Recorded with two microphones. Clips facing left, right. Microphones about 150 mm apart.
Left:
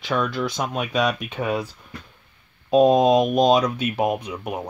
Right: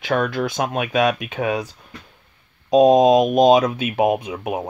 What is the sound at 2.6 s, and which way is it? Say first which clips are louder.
Speech: right 3 dB; 15° right (ahead or behind).